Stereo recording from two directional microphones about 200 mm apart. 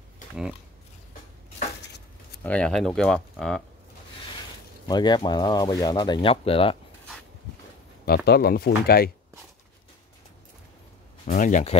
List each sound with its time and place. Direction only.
2.4 s speech: 5° left (ahead or behind)
4.8 s speech: 20° left (ahead or behind)
8.3 s speech: 50° left (ahead or behind)
11.2 s speech: 40° left (ahead or behind)